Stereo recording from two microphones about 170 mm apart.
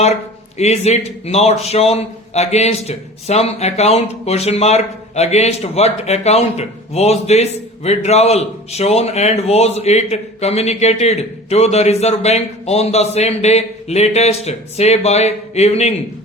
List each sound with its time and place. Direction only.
0.0 s a man's voice: 40° left (ahead or behind)